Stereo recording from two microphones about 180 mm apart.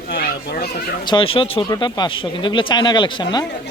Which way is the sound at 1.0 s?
25° left (ahead or behind).